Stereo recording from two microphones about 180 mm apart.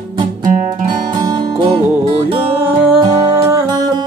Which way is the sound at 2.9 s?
30° right (ahead or behind).